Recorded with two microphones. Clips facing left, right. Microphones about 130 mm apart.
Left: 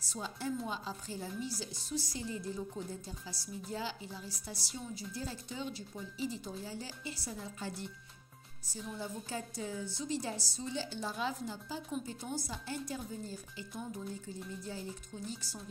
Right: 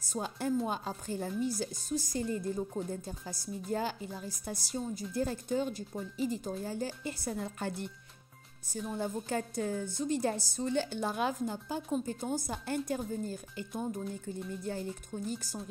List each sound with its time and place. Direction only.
0.0 s a woman's voice: 50° right (ahead or behind)